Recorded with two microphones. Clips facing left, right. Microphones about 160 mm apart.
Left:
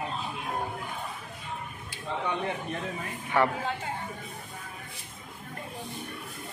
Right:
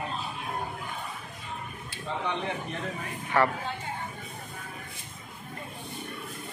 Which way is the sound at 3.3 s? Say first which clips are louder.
Even; 10° left (ahead or behind).